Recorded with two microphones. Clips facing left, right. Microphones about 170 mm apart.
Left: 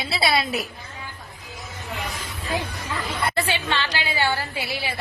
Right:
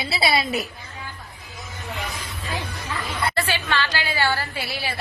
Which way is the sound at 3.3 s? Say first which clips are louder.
Even; 20° left (ahead or behind).